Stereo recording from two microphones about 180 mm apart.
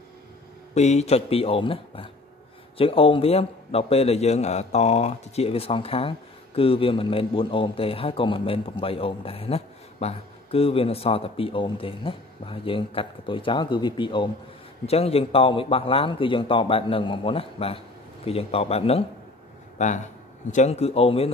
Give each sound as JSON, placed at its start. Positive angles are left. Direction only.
{"t": 0.7, "sound": "a man's voice", "side_deg": 40}
{"t": 20.5, "sound": "a man's voice", "side_deg": 35}